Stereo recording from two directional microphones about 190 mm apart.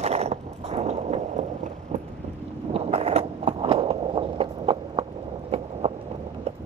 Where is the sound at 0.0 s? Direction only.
35° right (ahead or behind).